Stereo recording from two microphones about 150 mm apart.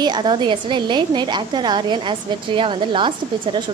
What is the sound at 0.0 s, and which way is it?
A woman's voice, 30° right (ahead or behind).